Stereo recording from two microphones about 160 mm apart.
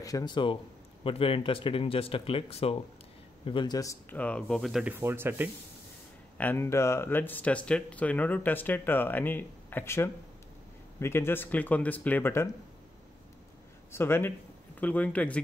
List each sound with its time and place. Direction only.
0.0 s speech: 25° left (ahead or behind)
4.2 s speech: 5° left (ahead or behind)
4.9 s speech: 15° right (ahead or behind)
6.3 s speech: 10° left (ahead or behind)
13.9 s speech: 15° left (ahead or behind)